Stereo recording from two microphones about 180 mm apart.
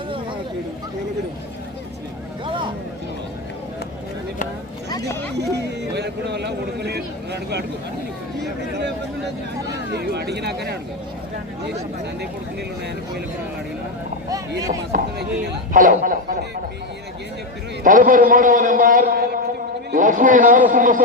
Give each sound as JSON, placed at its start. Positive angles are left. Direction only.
{"t": 4.9, "sound": "a sound", "side_deg": 20}
{"t": 5.4, "sound": "a sound", "side_deg": -65}
{"t": 8.4, "sound": "speech", "side_deg": -70}
{"t": 9.9, "sound": "speech", "side_deg": -65}
{"t": 14.9, "sound": "a man's voice", "side_deg": -55}
{"t": 17.8, "sound": "a man's voice", "side_deg": -50}